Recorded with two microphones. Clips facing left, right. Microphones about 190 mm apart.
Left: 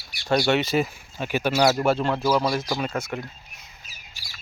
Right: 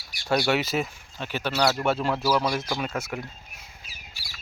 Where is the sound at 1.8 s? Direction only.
Centre (ahead or behind).